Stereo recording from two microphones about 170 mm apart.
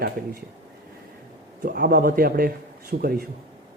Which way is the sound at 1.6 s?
60° right (ahead or behind).